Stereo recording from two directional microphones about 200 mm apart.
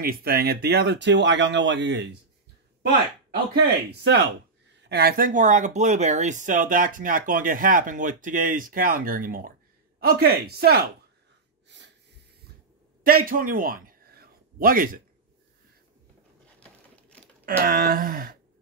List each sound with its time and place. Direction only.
0.0 s speech: 50° right (ahead or behind)
4.0 s speech: 55° right (ahead or behind)
13.0 s a sound: 45° right (ahead or behind)
16.5 s crumpling: 5° left (ahead or behind)
17.5 s speech: 45° right (ahead or behind)